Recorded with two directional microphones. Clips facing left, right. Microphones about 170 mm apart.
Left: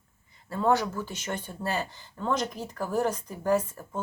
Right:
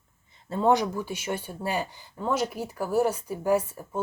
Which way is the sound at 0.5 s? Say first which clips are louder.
Right 2 dB; 20° right (ahead or behind).